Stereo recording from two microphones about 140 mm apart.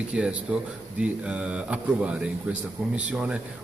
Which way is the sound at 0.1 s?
5° right (ahead or behind).